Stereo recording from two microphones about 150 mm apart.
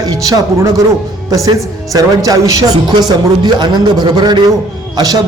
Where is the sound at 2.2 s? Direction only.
25° right (ahead or behind).